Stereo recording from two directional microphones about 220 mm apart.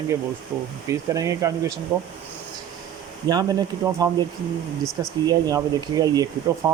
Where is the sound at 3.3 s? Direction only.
15° right (ahead or behind).